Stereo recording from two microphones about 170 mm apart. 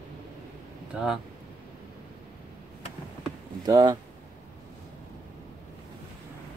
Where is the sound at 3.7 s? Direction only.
20° right (ahead or behind).